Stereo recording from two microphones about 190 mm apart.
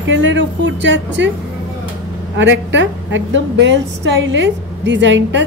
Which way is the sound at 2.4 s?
70° right (ahead or behind).